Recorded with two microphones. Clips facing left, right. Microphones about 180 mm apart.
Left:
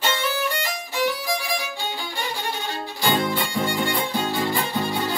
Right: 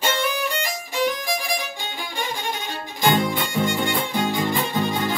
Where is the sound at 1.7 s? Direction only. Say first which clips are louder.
Left 1 dB; 15° right (ahead or behind).